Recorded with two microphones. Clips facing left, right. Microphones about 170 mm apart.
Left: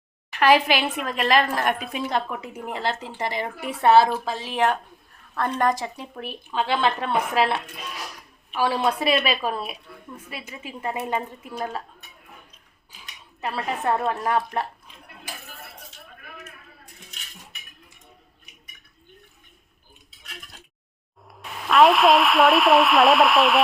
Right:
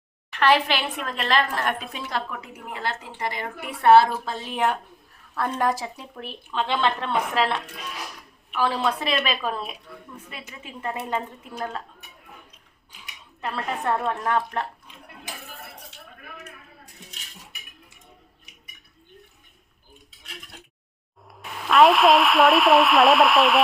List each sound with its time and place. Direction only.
0.3 s a woman's voice: 10° left (ahead or behind)
3.8 s a woman's voice: 60° right (ahead or behind)
5.3 s a woman's voice: 5° right (ahead or behind)
13.4 s a woman's voice: 5° left (ahead or behind)
21.2 s speech: centre (ahead or behind)